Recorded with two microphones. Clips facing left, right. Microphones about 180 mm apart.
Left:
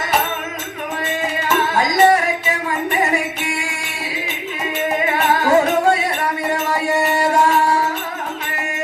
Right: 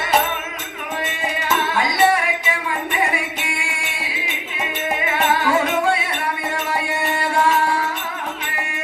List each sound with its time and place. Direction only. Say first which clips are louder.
1.7 s music: left 4 dB; 40° left (ahead or behind)
5.3 s music: left 5 dB; 40° left (ahead or behind)